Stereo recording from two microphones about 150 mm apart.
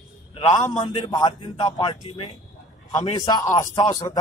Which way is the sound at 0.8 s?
30° left (ahead or behind).